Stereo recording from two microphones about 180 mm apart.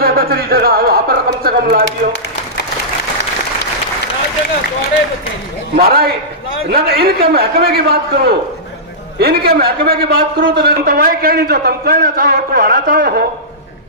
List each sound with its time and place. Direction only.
0.0 s a man's voice: 55° right (ahead or behind)
5.8 s a man's voice: 60° right (ahead or behind)